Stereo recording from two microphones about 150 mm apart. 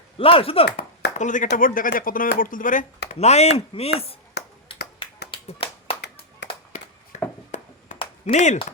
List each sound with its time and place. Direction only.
0.2 s speech: 40° left (ahead or behind)
0.8 s speech: 55° left (ahead or behind)
4.4 s ping: 90° left
5.3 s clapping: 40° left (ahead or behind)
7.1 s a sound: 55° left (ahead or behind)